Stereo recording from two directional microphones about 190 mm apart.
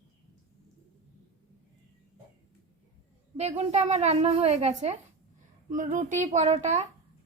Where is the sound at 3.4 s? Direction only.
35° right (ahead or behind).